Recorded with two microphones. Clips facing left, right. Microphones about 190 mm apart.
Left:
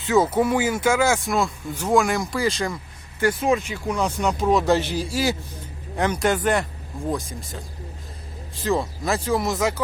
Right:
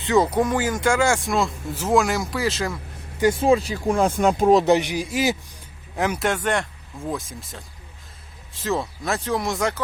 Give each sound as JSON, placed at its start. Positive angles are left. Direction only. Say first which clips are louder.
{"t": 0.0, "sound": "speech", "louder": "even", "side_deg": 5}
{"t": 3.3, "sound": "speech", "louder": "right 3 dB", "side_deg": -30}
{"t": 4.6, "sound": "a man's voice", "louder": "right 2 dB", "side_deg": -15}
{"t": 6.0, "sound": "speech", "louder": "left 2 dB", "side_deg": -5}